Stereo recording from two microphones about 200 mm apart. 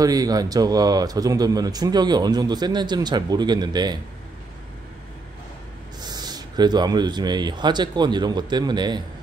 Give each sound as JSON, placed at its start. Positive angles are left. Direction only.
{"t": 0.0, "sound": "speech", "side_deg": -20}
{"t": 5.9, "sound": "speech", "side_deg": -20}